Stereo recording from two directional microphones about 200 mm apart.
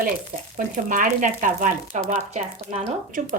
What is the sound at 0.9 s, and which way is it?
A woman's voice, 40° right (ahead or behind).